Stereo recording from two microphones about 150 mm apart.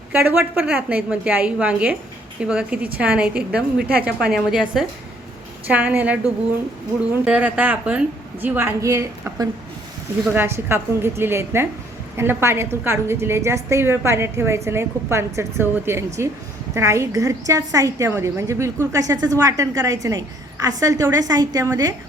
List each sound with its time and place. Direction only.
0.1 s a woman's voice: 15° right (ahead or behind)
7.3 s a woman's voice: 10° right (ahead or behind); by 21.9 s 25° right (ahead or behind)